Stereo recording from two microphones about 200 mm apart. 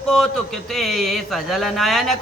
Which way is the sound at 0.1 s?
Centre (ahead or behind).